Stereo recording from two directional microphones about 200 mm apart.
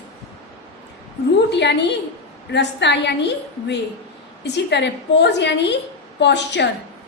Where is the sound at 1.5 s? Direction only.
60° left (ahead or behind).